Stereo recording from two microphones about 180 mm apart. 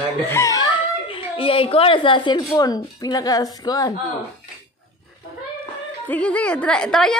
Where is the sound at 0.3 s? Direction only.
15° left (ahead or behind).